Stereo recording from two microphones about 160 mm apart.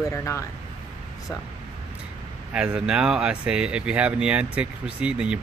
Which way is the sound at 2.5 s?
5° right (ahead or behind).